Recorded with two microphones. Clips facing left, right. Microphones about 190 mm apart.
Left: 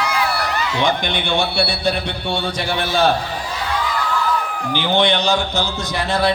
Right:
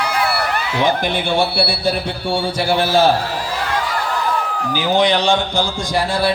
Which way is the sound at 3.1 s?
65° right (ahead or behind).